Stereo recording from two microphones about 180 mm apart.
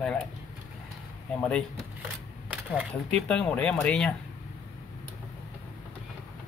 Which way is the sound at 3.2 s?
5° left (ahead or behind).